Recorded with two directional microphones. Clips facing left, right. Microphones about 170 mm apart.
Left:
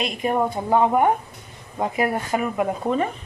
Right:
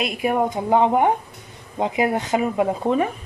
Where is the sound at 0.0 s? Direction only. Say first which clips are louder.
Right 1 dB; 5° right (ahead or behind); by 3.0 s 25° right (ahead or behind).